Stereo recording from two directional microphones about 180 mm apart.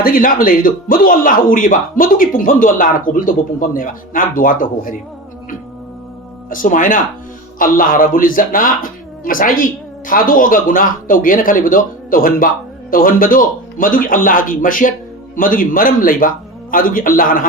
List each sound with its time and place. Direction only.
0.0 s a man's voice: 50° left (ahead or behind)
6.5 s a man's voice: 50° left (ahead or behind)